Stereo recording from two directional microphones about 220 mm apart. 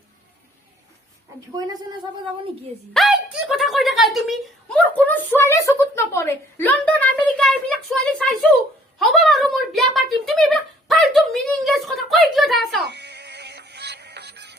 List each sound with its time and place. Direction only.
1.5 s a woman's voice: 15° right (ahead or behind)
2.9 s a woman's voice: centre (ahead or behind)
12.8 s synthetic singing: 50° right (ahead or behind)